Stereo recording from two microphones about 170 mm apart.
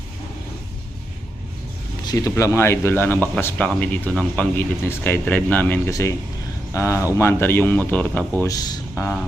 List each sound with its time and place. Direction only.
2.0 s speech: 20° left (ahead or behind)
8.4 s speech: 20° left (ahead or behind)